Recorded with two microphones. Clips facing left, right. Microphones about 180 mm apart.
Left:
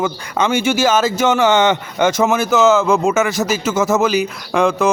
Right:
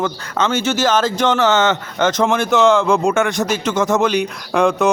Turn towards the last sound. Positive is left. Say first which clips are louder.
# even
turn(degrees=0)  # may be behind; listen again after turning